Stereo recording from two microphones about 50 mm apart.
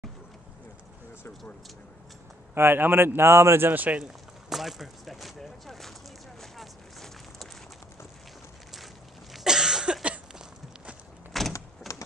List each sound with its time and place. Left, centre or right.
2.5 s speech: right
3.7 s speech: right
4.5 s a sound: centre
9.3 s cough: centre
11.3 s door: centre
11.9 s typewriter: centre